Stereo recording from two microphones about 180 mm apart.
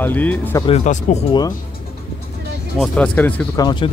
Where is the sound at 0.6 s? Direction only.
40° left (ahead or behind).